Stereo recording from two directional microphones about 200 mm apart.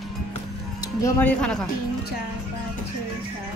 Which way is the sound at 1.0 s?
10° left (ahead or behind).